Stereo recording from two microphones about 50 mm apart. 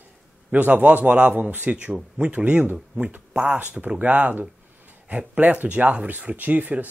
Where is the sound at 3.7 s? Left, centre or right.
Right.